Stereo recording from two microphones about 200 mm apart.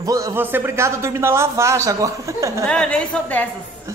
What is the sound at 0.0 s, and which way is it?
A man's voice, 15° right (ahead or behind).